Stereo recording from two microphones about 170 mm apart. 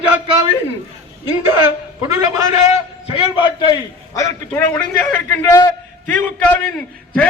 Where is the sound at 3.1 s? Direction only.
30° left (ahead or behind).